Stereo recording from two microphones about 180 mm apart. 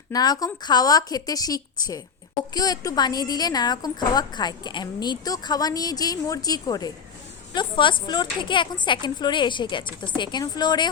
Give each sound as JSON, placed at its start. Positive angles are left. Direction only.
{"t": 0.1, "sound": "a woman's voice", "side_deg": 20}